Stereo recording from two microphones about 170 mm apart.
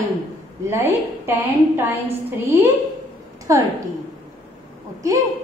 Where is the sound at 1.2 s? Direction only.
10° right (ahead or behind).